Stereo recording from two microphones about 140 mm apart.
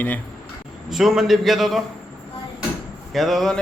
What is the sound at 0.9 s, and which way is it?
Speech, centre (ahead or behind).